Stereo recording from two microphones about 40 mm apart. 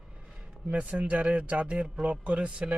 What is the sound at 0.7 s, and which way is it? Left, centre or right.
Speech, right.